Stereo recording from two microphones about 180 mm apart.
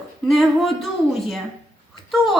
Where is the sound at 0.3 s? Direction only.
Centre (ahead or behind).